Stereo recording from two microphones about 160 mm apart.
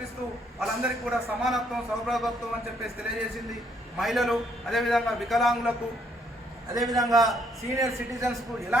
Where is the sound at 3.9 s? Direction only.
Centre (ahead or behind).